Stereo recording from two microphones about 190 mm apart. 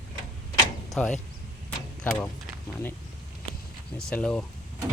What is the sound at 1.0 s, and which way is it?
Speech, 5° left (ahead or behind).